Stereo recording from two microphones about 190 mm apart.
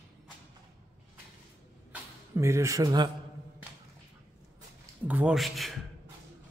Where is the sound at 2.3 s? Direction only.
15° right (ahead or behind).